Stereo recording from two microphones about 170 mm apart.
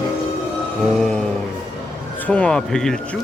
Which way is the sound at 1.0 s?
5° left (ahead or behind).